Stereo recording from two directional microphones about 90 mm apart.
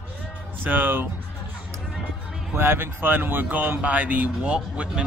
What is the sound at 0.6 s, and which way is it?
Speech, 20° right (ahead or behind).